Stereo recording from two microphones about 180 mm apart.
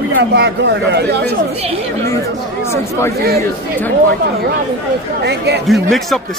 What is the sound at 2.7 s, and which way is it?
Speech, 15° left (ahead or behind).